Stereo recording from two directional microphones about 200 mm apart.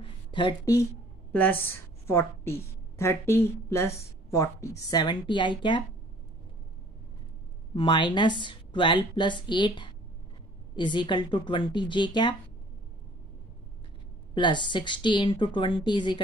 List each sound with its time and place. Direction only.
0.0 s a sound: 25° left (ahead or behind)
1.3 s a woman's voice: 10° left (ahead or behind)
7.7 s a woman's voice: 25° left (ahead or behind)
14.3 s a woman's voice: 25° left (ahead or behind)